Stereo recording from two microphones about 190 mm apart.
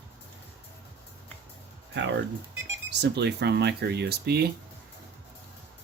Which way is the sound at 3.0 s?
60° right (ahead or behind).